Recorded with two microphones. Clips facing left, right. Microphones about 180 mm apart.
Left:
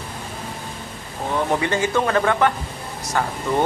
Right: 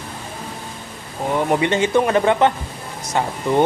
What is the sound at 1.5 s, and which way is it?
Speech, 20° right (ahead or behind).